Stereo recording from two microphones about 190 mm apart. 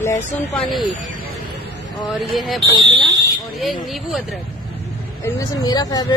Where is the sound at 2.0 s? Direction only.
Centre (ahead or behind).